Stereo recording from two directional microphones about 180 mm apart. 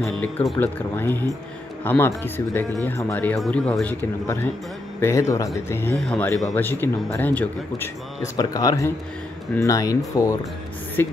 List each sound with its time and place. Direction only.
0.5 s a man's voice: 10° left (ahead or behind)